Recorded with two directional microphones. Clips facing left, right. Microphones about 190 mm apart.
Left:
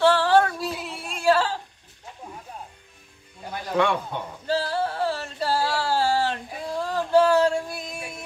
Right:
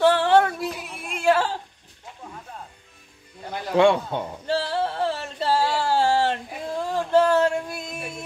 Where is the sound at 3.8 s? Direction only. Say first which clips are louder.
Right 6 dB; 25° right (ahead or behind).